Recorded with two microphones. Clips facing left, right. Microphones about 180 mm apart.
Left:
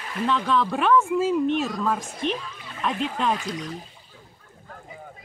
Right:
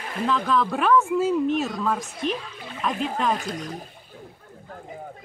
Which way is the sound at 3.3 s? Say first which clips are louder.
Even; 50° right (ahead or behind).